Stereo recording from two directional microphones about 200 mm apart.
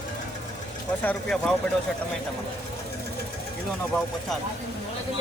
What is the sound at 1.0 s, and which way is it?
Speech, centre (ahead or behind).